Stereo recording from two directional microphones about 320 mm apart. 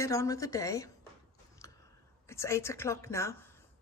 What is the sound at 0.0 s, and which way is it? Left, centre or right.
Speech, centre.